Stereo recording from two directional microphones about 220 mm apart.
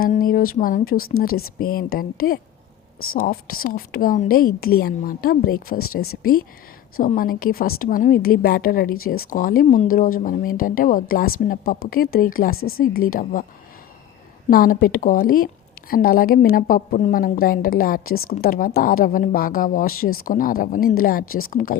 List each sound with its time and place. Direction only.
0.0 s a woman's voice: 40° left (ahead or behind)
3.0 s a woman's voice: 70° left (ahead or behind)
3.2 s a woman's voice: 40° left (ahead or behind)
6.9 s a woman's voice: 40° left (ahead or behind)
12.5 s a woman's voice: 70° left (ahead or behind)
12.8 s a woman's voice: 40° left (ahead or behind)
14.5 s a woman's voice: 40° left (ahead or behind)